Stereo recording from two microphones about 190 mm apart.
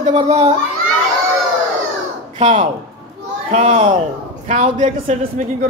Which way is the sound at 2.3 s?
35° right (ahead or behind).